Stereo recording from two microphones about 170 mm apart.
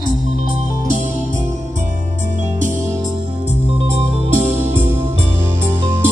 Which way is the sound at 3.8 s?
35° right (ahead or behind).